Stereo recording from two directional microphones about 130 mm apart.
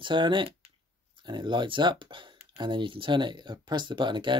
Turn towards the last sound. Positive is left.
turn(degrees=-35)  # may be behind; listen again after turning